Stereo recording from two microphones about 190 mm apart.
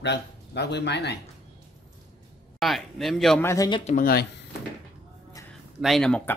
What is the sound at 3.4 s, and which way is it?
Speech, 20° left (ahead or behind).